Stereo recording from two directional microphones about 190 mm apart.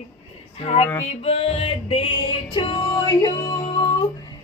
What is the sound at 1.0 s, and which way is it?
Female singing, 30° left (ahead or behind).